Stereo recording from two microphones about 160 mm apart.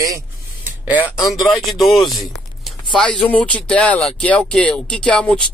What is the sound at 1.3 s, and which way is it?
Speech, centre (ahead or behind).